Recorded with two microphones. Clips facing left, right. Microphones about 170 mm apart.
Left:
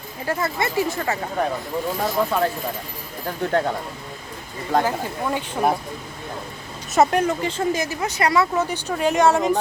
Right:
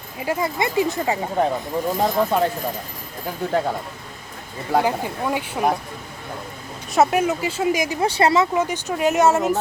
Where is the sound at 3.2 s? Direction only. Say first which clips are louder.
Even; 5° right (ahead or behind).